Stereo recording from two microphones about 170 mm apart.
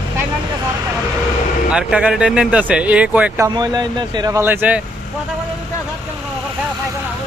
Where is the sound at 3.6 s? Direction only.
25° right (ahead or behind).